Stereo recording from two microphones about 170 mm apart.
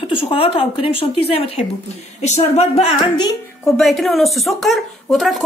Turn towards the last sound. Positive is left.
turn(degrees=0)  # may be behind; listen again after turning